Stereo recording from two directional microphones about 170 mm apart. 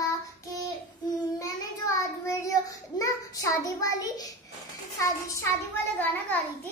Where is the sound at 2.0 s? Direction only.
20° left (ahead or behind).